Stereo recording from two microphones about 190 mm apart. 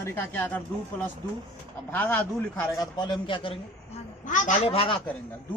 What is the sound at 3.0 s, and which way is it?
Speech, 25° left (ahead or behind).